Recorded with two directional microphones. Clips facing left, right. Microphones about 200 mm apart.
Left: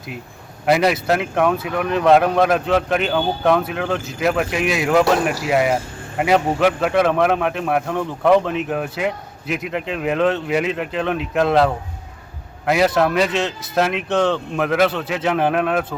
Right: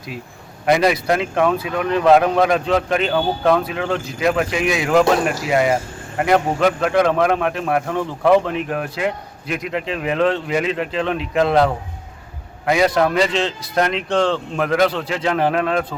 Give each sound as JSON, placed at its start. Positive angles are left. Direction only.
{"t": 0.6, "sound": "a man's voice", "side_deg": 5}